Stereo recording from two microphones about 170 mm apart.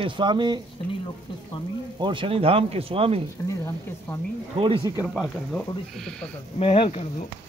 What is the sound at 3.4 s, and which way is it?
Speech, 15° left (ahead or behind).